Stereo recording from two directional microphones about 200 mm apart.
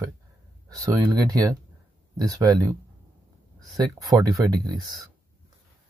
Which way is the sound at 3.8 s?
20° right (ahead or behind).